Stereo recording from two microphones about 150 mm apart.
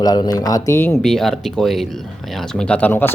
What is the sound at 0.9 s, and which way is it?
Speech, centre (ahead or behind).